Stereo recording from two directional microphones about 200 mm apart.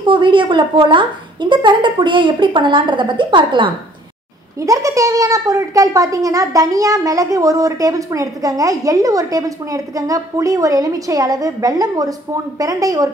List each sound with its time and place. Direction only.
0.0 s a woman's voice: 25° right (ahead or behind)